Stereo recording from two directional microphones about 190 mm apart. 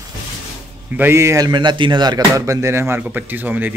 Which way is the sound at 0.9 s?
10° right (ahead or behind).